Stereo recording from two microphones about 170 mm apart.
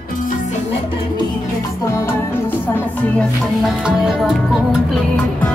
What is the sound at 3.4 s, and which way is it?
Music, 5° right (ahead or behind).